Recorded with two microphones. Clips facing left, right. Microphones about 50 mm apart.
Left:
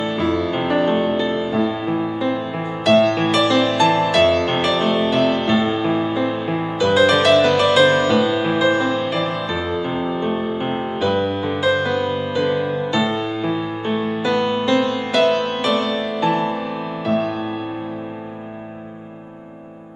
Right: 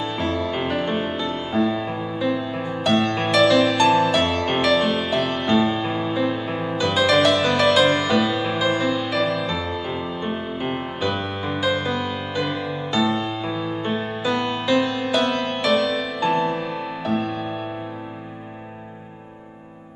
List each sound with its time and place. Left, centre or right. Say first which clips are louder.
0.1 s music: left 4 dB; centre
4.7 s music: left 2 dB; centre
5.0 s music: left 5 dB; centre
7.2 s music: left 4 dB; centre
7.9 s music: left 4 dB; centre
9.8 s music: left 5 dB; left
11.0 s music: left 9 dB; centre